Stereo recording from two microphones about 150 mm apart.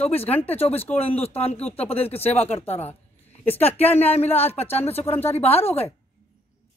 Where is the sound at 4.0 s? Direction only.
45° left (ahead or behind).